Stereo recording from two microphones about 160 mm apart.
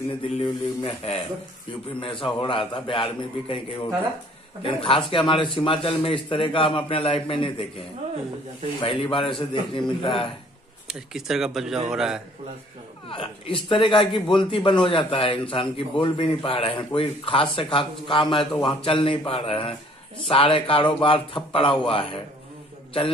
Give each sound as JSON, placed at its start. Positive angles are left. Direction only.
{"t": 0.4, "sound": "a man's voice", "side_deg": 35}
{"t": 8.7, "sound": "a man's voice", "side_deg": 35}
{"t": 10.9, "sound": "speech", "side_deg": -5}
{"t": 13.1, "sound": "a man's voice", "side_deg": 35}